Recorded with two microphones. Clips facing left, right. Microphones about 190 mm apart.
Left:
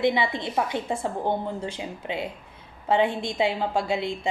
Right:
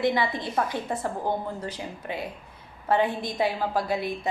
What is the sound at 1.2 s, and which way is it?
A woman's voice, 25° left (ahead or behind).